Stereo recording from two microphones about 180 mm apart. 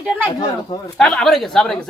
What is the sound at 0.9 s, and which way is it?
Speech, 5° left (ahead or behind).